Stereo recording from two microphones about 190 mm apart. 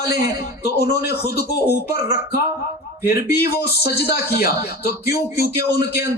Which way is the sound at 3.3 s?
55° left (ahead or behind).